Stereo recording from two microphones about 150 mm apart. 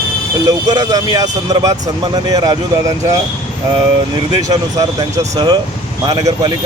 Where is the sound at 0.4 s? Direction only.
25° right (ahead or behind).